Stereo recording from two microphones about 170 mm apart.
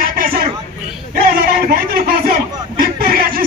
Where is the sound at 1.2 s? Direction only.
60° right (ahead or behind).